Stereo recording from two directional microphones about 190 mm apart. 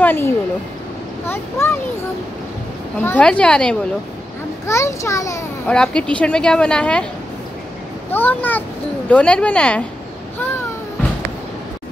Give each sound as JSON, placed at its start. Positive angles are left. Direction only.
{"t": 0.0, "sound": "a child's voice", "side_deg": 10}
{"t": 3.0, "sound": "speech", "side_deg": 10}
{"t": 4.6, "sound": "a child's voice", "side_deg": 15}
{"t": 5.7, "sound": "speech", "side_deg": 5}
{"t": 8.1, "sound": "a child's voice", "side_deg": 10}